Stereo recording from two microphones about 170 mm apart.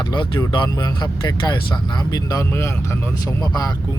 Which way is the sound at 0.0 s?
25° left (ahead or behind).